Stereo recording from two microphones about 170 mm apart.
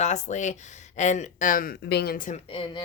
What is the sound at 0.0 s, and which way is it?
Speech, 45° left (ahead or behind).